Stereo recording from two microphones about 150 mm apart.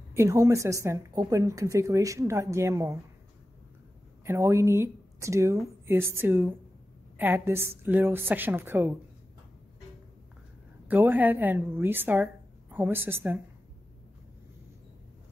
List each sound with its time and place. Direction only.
0.1 s a woman's voice: 20° right (ahead or behind)
4.3 s a woman's voice: 15° right (ahead or behind)
10.9 s a woman's voice: 10° right (ahead or behind)